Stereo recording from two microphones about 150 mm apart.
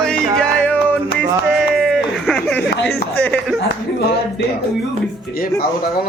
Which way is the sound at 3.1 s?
10° left (ahead or behind).